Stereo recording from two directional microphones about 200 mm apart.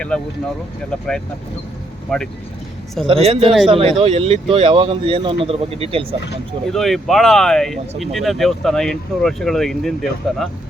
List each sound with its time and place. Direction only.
0.1 s speech: 5° left (ahead or behind)
3.1 s speech: 30° right (ahead or behind)
6.7 s speech: centre (ahead or behind)